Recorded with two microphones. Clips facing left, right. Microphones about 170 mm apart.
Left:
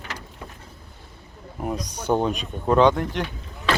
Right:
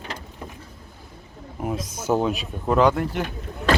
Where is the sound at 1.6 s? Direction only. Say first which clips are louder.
Even; centre (ahead or behind).